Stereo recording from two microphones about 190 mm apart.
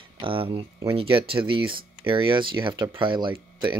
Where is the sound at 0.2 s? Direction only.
30° right (ahead or behind).